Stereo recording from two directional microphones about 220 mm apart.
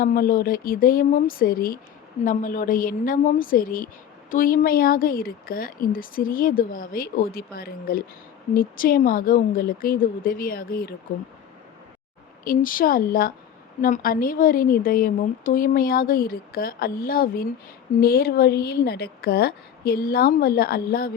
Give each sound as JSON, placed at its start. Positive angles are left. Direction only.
{"t": 0.0, "sound": "a woman's voice", "side_deg": 40}
{"t": 12.5, "sound": "a woman's voice", "side_deg": 40}